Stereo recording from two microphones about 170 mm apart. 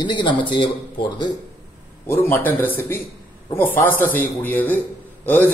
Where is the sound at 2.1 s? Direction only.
10° left (ahead or behind).